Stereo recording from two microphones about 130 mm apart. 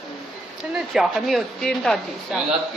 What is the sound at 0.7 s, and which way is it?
A woman's voice, centre (ahead or behind).